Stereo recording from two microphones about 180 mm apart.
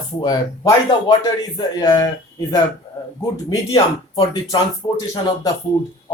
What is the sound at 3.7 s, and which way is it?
Speech, 30° left (ahead or behind).